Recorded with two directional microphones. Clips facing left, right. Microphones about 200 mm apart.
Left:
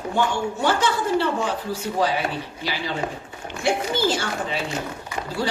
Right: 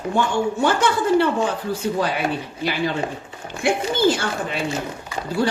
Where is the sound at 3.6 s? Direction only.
55° right (ahead or behind).